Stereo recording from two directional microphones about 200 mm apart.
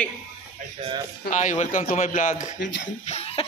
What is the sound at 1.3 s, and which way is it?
A man's voice, 35° left (ahead or behind).